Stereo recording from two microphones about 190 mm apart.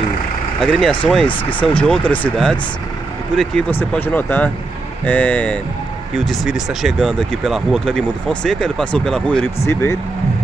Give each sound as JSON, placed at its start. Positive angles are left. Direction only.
{"t": 0.6, "sound": "speech", "side_deg": 0}
{"t": 1.2, "sound": "speech", "side_deg": 25}
{"t": 1.6, "sound": "speech", "side_deg": 5}